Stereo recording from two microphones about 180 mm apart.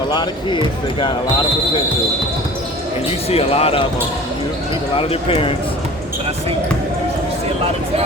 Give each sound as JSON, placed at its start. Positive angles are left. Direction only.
{"t": 0.1, "sound": "speech", "side_deg": 25}
{"t": 3.2, "sound": "speech", "side_deg": 35}
{"t": 4.9, "sound": "speech", "side_deg": 30}